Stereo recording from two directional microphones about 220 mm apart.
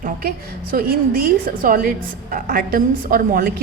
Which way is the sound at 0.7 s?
45° right (ahead or behind).